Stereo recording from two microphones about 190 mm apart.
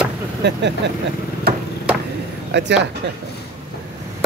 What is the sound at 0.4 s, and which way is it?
Speech, 65° right (ahead or behind).